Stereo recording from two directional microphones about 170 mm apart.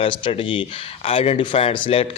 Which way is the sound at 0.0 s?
35° left (ahead or behind).